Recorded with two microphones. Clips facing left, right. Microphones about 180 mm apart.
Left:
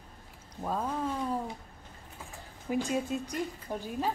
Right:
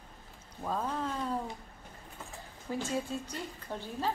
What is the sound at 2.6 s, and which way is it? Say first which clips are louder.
A woman's voice: left 4 dB; 15° left (ahead or behind).